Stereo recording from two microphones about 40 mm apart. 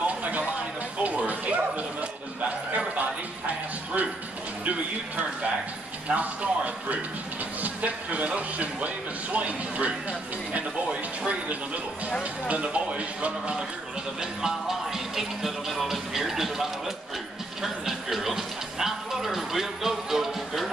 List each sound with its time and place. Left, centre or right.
0.0 s music: right
4.6 s speech: right
14.4 s music: centre